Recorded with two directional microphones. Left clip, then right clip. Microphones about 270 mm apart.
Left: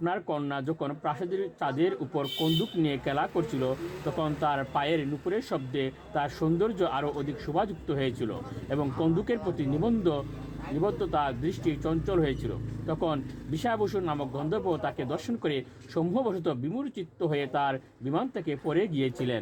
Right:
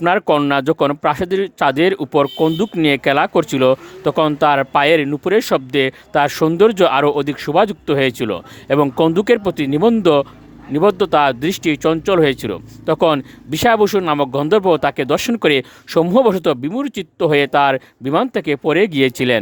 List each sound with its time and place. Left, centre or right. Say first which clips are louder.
0.0 s speech: right 17 dB; right
3.0 s speech: right 15 dB; right